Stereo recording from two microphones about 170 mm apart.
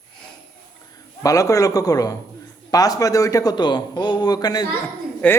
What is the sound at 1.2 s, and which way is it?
A man's voice, 20° left (ahead or behind).